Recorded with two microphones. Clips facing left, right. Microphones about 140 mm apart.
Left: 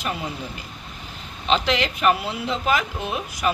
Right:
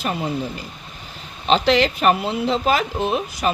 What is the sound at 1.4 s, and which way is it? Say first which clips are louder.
Speech: right 5 dB; 35° right (ahead or behind).